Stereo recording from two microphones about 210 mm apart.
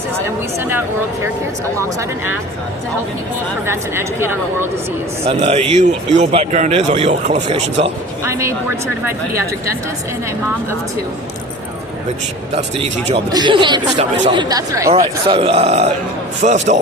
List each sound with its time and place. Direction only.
1.8 s speech: 10° right (ahead or behind)
3.7 s speech: 10° right (ahead or behind)
5.2 s speech: 30° right (ahead or behind)
8.2 s speech: 15° right (ahead or behind)
12.5 s speech: 35° right (ahead or behind)
13.3 s speech: 20° right (ahead or behind)
14.9 s speech: 30° right (ahead or behind)